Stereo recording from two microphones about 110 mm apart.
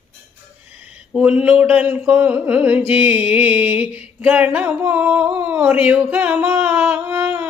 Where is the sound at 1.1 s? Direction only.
10° right (ahead or behind).